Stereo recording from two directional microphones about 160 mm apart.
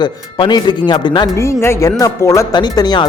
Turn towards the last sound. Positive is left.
turn(degrees=25)  # may be behind; listen again after turning